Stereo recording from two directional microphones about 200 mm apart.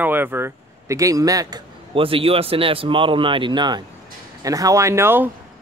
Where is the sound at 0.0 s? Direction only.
10° right (ahead or behind).